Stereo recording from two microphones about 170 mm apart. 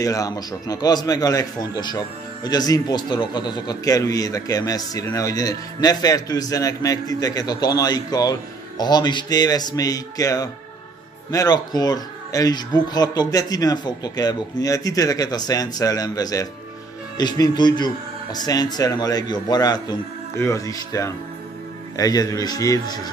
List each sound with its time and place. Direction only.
0.0 s a man's voice: 20° left (ahead or behind)